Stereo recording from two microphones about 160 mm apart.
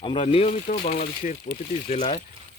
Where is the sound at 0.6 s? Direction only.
55° left (ahead or behind).